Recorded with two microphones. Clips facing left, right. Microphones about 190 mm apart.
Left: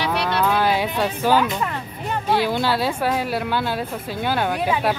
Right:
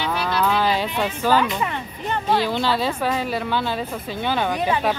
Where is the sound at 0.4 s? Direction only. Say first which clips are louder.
Even; 5° left (ahead or behind).